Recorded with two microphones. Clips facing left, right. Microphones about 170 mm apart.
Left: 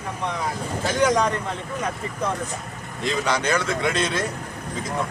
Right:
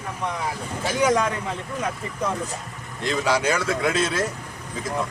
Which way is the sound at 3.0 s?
5° right (ahead or behind).